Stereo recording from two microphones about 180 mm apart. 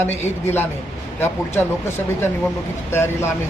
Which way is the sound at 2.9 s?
15° left (ahead or behind).